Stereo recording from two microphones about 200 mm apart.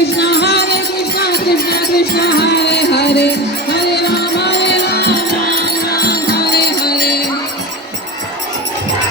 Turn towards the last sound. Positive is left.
turn(degrees=50)  # may be behind; listen again after turning